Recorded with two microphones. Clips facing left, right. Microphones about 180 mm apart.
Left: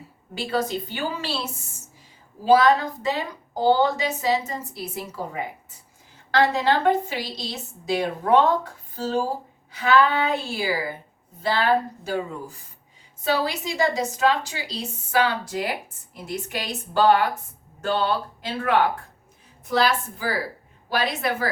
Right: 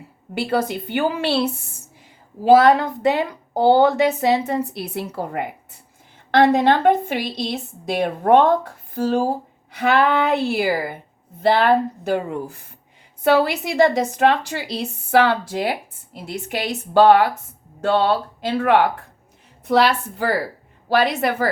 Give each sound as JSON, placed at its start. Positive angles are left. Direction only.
{"t": 0.3, "sound": "a woman's voice", "side_deg": -60}